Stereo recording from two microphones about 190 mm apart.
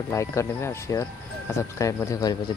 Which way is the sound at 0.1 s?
15° left (ahead or behind).